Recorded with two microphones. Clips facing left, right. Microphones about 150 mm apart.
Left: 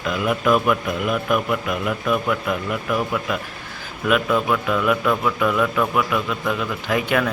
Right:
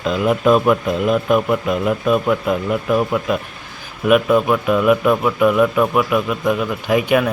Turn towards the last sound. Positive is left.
turn(degrees=-15)  # may be behind; listen again after turning